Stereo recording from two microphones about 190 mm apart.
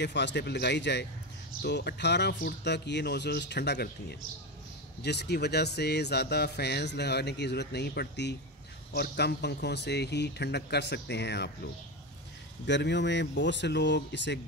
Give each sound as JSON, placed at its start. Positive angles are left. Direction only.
{"t": 0.0, "sound": "speech", "side_deg": 65}
{"t": 12.6, "sound": "speech", "side_deg": 65}